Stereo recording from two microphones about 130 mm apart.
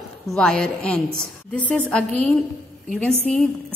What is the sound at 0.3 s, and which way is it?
A woman's voice, 5° left (ahead or behind).